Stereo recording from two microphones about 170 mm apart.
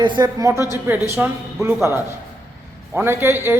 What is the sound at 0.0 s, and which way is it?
A man's voice, 25° right (ahead or behind).